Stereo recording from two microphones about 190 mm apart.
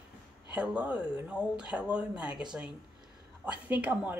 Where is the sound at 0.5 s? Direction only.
5° right (ahead or behind).